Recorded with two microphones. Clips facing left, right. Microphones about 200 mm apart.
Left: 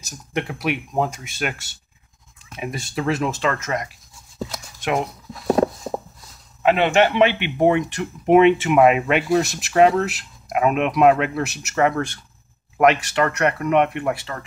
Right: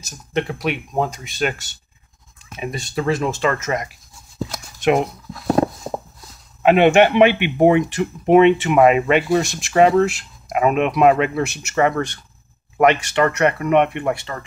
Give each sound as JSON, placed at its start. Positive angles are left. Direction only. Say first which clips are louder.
{"t": 0.3, "sound": "speech", "louder": "right 2 dB", "side_deg": 5}
{"t": 6.6, "sound": "speech", "louder": "right 4 dB", "side_deg": -15}
{"t": 8.3, "sound": "speech", "louder": "right 1 dB", "side_deg": 5}